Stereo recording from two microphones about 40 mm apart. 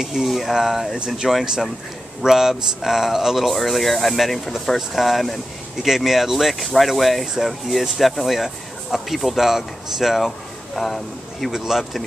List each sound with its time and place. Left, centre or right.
0.0 s speech: centre
11.5 s speech: centre